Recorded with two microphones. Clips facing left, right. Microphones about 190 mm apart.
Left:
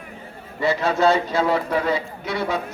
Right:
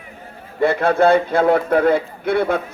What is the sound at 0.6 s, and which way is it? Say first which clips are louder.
A man's voice: right 5 dB; 55° right (ahead or behind).